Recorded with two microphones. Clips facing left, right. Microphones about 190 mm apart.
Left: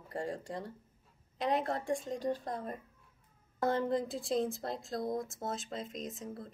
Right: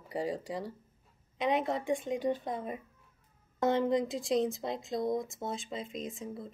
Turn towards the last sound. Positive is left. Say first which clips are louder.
# right 2 dB
turn(degrees=0)  # may be behind; listen again after turning